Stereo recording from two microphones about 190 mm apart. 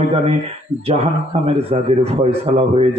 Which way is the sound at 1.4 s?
35° right (ahead or behind).